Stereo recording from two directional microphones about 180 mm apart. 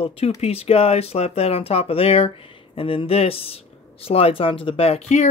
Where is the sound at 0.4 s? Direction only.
35° left (ahead or behind).